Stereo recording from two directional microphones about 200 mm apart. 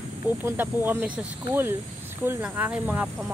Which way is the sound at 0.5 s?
10° right (ahead or behind).